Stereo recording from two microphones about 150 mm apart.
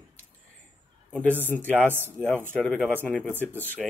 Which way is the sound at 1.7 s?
10° right (ahead or behind).